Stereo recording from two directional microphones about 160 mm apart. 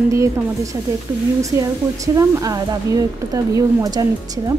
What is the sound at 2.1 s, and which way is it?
A woman's voice, 20° right (ahead or behind).